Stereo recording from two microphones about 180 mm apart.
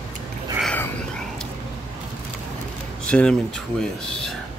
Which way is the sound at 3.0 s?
5° left (ahead or behind).